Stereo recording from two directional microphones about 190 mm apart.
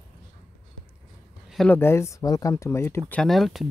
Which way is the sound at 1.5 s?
5° left (ahead or behind).